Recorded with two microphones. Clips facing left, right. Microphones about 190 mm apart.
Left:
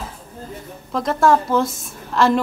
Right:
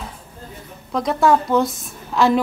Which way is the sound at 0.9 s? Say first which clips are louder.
Even; centre (ahead or behind).